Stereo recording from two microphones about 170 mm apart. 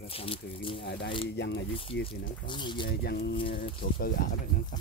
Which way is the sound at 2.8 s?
70° left (ahead or behind).